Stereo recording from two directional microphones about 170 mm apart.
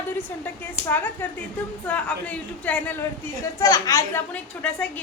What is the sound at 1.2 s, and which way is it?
A woman's voice, 10° left (ahead or behind).